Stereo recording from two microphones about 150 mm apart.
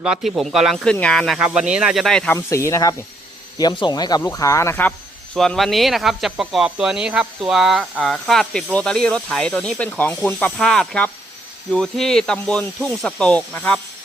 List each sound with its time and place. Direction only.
0.0 s speech: 5° right (ahead or behind)
2.3 s speech: 20° left (ahead or behind)